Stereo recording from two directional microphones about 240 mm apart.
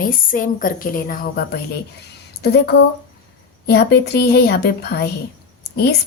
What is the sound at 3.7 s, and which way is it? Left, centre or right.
Speech, left.